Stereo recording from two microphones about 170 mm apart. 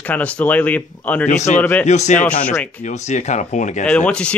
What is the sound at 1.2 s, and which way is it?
Speech, 45° left (ahead or behind).